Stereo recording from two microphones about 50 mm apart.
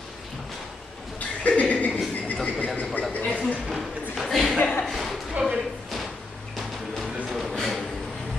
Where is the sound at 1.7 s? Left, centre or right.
Left.